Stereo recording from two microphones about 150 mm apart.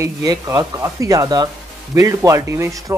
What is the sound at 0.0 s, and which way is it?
Speech, 20° right (ahead or behind).